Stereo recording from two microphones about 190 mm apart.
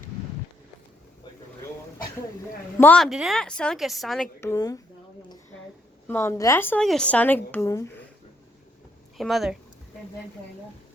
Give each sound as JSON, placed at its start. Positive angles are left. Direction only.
{"t": 2.7, "sound": "a woman's voice", "side_deg": 10}
{"t": 4.4, "sound": "speech", "side_deg": 15}
{"t": 6.1, "sound": "speech", "side_deg": 15}
{"t": 9.1, "sound": "a woman's voice", "side_deg": 0}